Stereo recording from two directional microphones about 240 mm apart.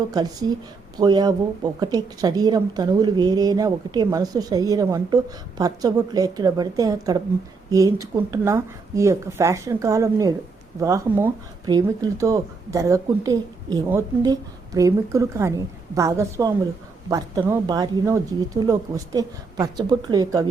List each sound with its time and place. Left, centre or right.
0.1 s speech: centre